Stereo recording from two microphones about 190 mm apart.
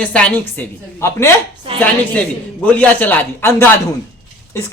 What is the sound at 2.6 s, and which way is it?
A man's voice, 10° left (ahead or behind).